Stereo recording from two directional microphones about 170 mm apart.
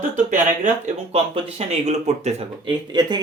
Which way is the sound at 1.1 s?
35° right (ahead or behind).